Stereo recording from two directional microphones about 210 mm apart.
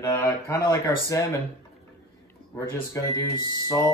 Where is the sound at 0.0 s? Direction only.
15° left (ahead or behind).